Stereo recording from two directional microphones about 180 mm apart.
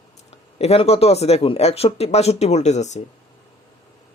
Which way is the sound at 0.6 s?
35° left (ahead or behind).